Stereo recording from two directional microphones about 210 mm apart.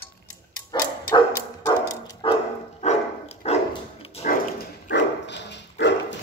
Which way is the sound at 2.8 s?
30° left (ahead or behind).